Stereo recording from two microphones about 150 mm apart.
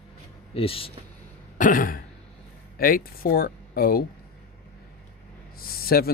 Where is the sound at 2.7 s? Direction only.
75° left (ahead or behind).